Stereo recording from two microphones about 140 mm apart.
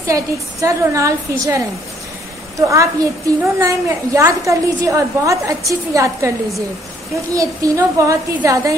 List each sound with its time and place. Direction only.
0.0 s a woman's voice: 20° right (ahead or behind)
2.5 s a woman's voice: 20° right (ahead or behind)
7.3 s a woman's voice: 25° right (ahead or behind)